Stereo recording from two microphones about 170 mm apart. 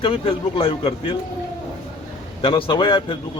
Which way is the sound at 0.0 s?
30° left (ahead or behind).